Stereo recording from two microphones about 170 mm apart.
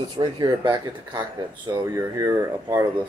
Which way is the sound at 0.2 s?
25° right (ahead or behind).